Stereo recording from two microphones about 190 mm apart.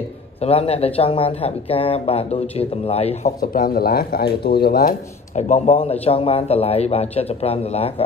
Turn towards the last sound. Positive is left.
turn(degrees=30)  # may be behind; listen again after turning